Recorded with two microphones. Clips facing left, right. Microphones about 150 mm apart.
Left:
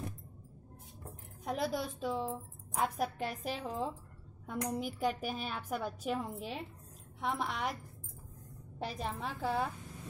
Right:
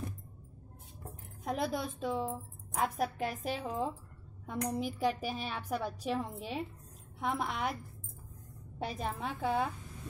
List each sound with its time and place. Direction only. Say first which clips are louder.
1.4 s a woman's voice: right 1 dB; centre (ahead or behind)
8.7 s a woman's voice: right 2 dB; centre (ahead or behind)